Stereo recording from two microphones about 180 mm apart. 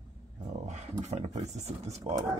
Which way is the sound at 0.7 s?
40° right (ahead or behind).